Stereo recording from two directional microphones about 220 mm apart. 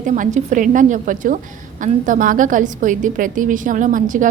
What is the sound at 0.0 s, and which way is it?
A woman's voice, 35° right (ahead or behind).